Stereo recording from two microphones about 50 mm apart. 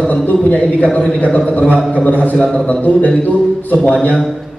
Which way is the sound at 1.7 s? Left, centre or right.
Left.